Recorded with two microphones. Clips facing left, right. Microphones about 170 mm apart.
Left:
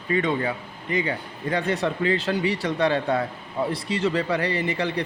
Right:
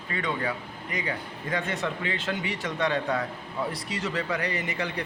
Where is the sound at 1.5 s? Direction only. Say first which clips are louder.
Left 5 dB; 35° left (ahead or behind).